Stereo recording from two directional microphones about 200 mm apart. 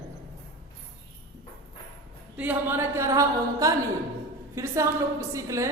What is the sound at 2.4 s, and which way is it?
A man's voice, 10° right (ahead or behind).